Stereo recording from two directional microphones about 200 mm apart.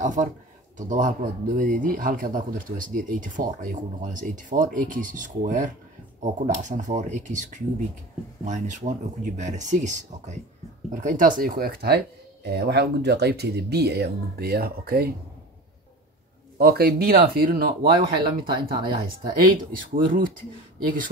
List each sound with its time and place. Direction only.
0.0 s speech: 40° right (ahead or behind)
16.5 s speech: 50° right (ahead or behind)
18.0 s speech: 25° right (ahead or behind)
19.7 s speech: 45° right (ahead or behind)